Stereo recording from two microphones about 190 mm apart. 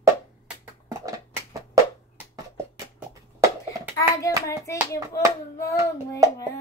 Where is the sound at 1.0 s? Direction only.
15° right (ahead or behind).